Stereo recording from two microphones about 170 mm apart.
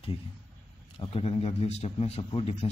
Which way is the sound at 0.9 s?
35° left (ahead or behind).